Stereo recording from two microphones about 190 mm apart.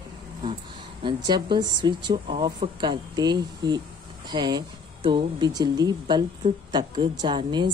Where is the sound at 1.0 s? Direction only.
25° right (ahead or behind).